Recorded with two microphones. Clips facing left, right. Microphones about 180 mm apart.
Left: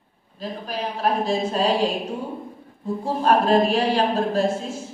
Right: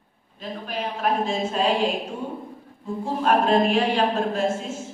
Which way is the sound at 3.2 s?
35° left (ahead or behind).